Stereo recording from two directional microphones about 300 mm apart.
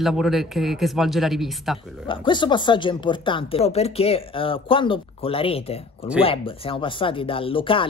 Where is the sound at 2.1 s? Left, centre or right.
Centre.